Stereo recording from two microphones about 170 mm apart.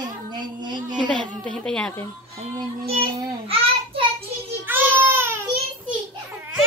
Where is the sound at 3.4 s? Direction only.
35° right (ahead or behind).